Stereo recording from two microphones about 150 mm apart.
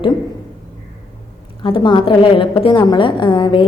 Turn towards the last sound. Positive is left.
turn(degrees=35)  # may be behind; listen again after turning